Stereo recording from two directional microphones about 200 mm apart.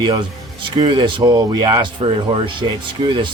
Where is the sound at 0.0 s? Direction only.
20° right (ahead or behind).